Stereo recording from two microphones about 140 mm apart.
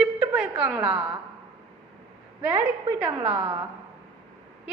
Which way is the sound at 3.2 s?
45° right (ahead or behind).